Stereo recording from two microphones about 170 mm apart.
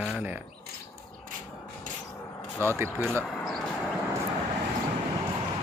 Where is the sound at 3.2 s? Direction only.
Centre (ahead or behind).